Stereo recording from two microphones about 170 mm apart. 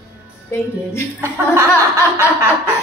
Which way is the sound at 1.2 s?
15° right (ahead or behind).